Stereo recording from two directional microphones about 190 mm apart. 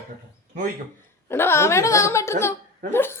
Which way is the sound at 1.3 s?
10° left (ahead or behind).